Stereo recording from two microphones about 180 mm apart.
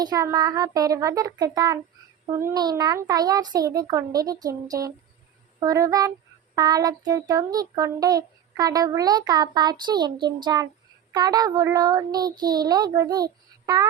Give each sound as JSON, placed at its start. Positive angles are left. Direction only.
{"t": 0.0, "sound": "a child's voice", "side_deg": -20}